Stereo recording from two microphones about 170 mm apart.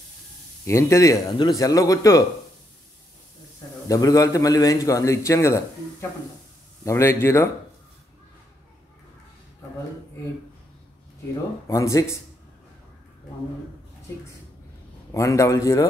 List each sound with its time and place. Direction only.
0.7 s a man's voice: 15° left (ahead or behind)
3.9 s a man's voice: 20° left (ahead or behind)
11.6 s speech: 15° left (ahead or behind)
15.1 s speech: 15° left (ahead or behind)